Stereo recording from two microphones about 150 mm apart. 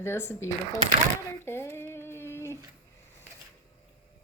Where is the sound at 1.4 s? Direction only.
15° left (ahead or behind).